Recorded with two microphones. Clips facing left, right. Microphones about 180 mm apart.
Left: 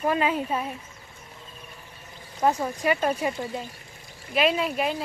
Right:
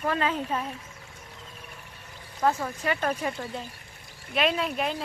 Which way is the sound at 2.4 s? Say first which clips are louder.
Left 2 dB; 15° left (ahead or behind).